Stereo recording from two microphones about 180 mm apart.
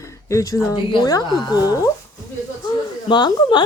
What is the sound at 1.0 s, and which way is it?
Speech, 20° left (ahead or behind).